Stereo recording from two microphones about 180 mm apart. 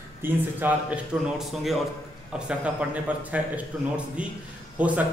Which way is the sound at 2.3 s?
5° right (ahead or behind).